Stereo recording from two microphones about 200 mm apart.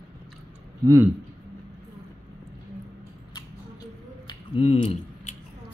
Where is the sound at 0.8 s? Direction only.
15° right (ahead or behind).